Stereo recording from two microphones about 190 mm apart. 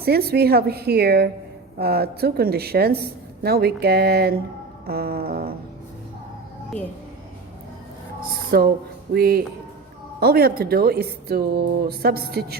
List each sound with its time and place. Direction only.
0.0 s a woman's voice: 55° right (ahead or behind)
4.9 s music: 55° right (ahead or behind)
8.4 s speech: 50° right (ahead or behind)
9.1 s music: 55° right (ahead or behind)
10.2 s a woman's voice: 55° right (ahead or behind)